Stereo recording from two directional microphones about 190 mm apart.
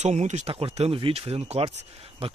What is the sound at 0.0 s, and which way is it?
Speech, 35° right (ahead or behind).